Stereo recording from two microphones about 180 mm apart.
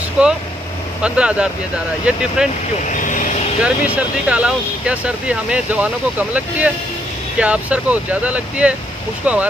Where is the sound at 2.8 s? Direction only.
45° left (ahead or behind).